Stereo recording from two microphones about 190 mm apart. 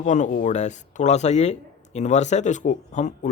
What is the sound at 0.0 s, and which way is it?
Speech, 40° left (ahead or behind).